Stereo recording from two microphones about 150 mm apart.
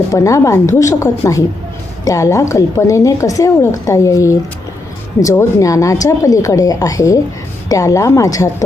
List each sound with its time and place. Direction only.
0.1 s a woman's voice: 20° left (ahead or behind)